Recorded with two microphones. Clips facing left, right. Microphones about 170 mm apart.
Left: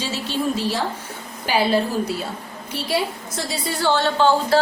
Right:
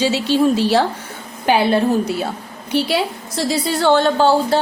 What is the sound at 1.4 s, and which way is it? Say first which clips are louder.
Speech: right 4 dB; 60° right (ahead or behind).